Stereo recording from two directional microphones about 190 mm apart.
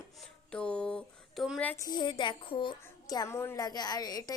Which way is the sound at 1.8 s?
25° left (ahead or behind).